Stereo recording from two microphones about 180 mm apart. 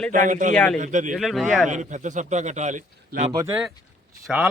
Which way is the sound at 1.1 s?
Centre (ahead or behind).